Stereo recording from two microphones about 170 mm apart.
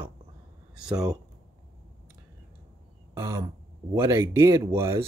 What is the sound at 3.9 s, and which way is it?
Speech, 15° right (ahead or behind).